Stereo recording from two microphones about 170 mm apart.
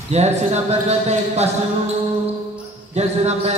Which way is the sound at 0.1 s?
40° right (ahead or behind).